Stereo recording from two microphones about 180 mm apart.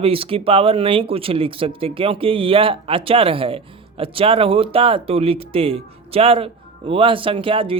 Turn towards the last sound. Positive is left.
turn(degrees=-30)  # may be behind; listen again after turning